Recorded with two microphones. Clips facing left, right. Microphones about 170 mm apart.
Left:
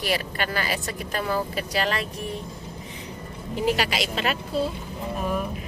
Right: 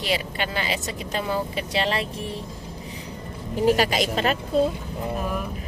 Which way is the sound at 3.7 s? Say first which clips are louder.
Right 5 dB; 45° right (ahead or behind).